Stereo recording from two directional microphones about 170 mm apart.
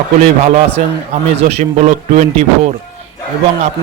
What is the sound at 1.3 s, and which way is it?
A man's voice, 40° right (ahead or behind).